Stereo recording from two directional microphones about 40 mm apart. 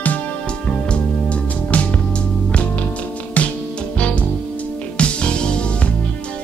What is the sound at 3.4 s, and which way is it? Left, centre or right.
Music, left.